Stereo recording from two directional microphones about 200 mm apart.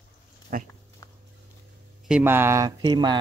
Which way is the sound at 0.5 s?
45° right (ahead or behind).